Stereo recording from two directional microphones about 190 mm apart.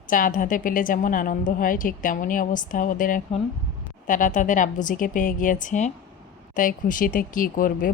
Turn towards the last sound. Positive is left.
turn(degrees=45)  # may be behind; listen again after turning